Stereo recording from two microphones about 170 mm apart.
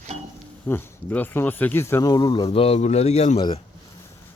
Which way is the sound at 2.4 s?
35° left (ahead or behind).